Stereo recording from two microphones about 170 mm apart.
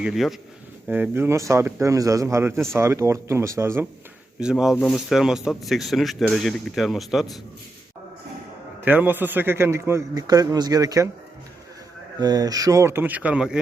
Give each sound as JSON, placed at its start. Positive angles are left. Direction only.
{"t": 0.0, "sound": "speech", "side_deg": 0}
{"t": 4.4, "sound": "speech", "side_deg": -5}
{"t": 8.8, "sound": "speech", "side_deg": -10}
{"t": 12.2, "sound": "speech", "side_deg": -20}